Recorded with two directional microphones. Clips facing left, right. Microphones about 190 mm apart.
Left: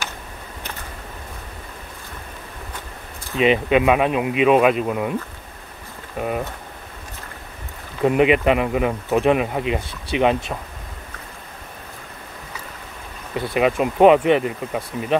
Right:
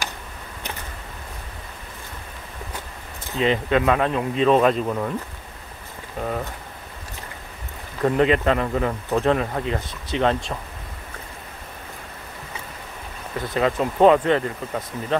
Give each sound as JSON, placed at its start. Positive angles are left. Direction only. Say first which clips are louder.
{"t": 3.3, "sound": "speech", "louder": "left 3 dB", "side_deg": 15}
{"t": 6.1, "sound": "speech", "louder": "left 3 dB", "side_deg": 15}
{"t": 8.0, "sound": "speech", "louder": "left 3 dB", "side_deg": 15}
{"t": 13.3, "sound": "speech", "louder": "left 3 dB", "side_deg": 15}